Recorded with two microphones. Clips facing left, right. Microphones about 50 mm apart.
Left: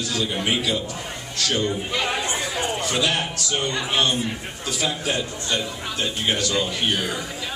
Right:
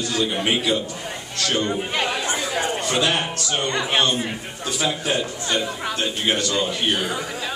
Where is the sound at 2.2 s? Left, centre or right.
Right.